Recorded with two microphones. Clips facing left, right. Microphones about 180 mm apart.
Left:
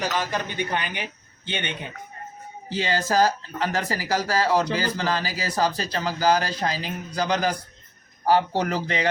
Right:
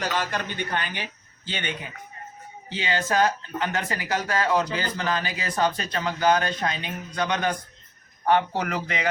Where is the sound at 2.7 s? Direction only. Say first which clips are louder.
Left 2 dB; 40° left (ahead or behind).